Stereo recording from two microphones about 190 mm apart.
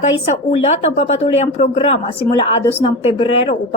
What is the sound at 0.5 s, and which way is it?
A woman's voice, 35° left (ahead or behind).